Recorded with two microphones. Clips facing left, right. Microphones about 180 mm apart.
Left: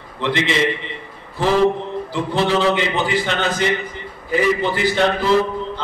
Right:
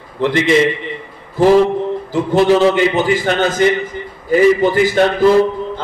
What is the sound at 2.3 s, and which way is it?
A man's voice, 45° right (ahead or behind).